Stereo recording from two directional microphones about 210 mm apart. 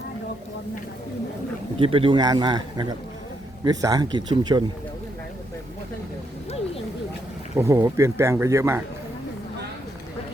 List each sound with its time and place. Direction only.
1.8 s a man's voice: 25° right (ahead or behind)
7.5 s speech: 15° right (ahead or behind)